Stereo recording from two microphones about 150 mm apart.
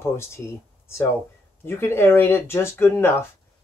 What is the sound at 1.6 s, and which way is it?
Speech, 15° left (ahead or behind).